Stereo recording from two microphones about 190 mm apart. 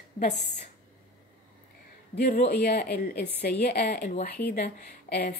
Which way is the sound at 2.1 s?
60° left (ahead or behind).